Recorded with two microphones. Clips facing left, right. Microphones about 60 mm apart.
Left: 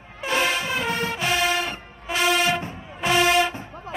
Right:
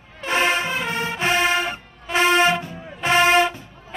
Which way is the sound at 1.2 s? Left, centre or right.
Right.